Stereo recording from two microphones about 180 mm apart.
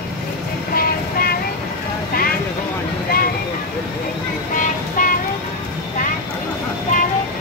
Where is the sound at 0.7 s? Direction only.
55° left (ahead or behind).